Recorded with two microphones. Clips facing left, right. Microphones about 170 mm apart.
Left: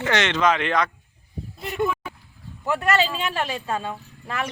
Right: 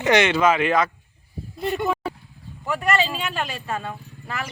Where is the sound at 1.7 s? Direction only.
35° right (ahead or behind).